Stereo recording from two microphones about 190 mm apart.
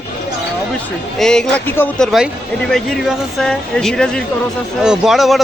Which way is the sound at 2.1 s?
Centre (ahead or behind).